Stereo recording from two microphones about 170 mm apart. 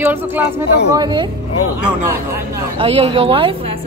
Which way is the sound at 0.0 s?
10° right (ahead or behind).